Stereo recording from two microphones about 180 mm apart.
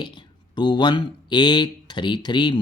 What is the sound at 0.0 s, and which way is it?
Speech, 25° left (ahead or behind).